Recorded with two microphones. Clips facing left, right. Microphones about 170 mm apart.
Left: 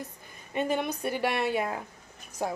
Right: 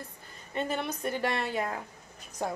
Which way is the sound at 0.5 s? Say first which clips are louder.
Left 3 dB; 15° left (ahead or behind).